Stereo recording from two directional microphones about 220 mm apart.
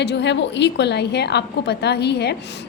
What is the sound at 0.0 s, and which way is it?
A woman's voice, 50° left (ahead or behind).